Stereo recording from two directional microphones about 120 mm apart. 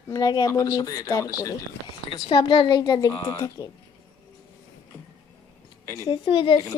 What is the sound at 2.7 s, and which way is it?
Speech, 35° left (ahead or behind).